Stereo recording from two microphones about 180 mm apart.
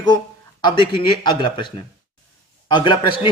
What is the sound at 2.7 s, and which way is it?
Speech, 25° left (ahead or behind).